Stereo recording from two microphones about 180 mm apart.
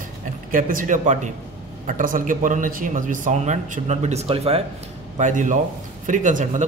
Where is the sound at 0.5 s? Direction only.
50° right (ahead or behind).